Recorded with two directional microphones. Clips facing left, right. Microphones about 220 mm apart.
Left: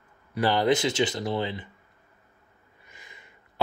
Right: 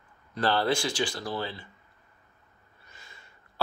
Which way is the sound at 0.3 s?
15° left (ahead or behind).